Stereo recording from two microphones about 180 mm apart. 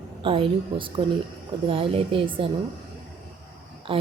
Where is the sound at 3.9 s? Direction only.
30° right (ahead or behind).